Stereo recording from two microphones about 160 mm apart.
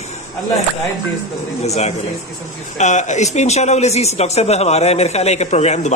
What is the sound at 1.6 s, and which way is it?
Speech, 45° left (ahead or behind).